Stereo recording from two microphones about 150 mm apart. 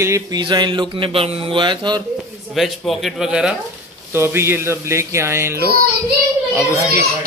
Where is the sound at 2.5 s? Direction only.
Centre (ahead or behind).